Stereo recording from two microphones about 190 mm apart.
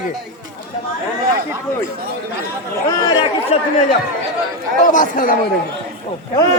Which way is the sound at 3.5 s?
35° left (ahead or behind).